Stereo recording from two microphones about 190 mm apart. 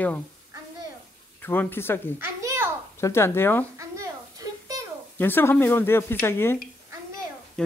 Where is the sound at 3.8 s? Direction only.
15° right (ahead or behind).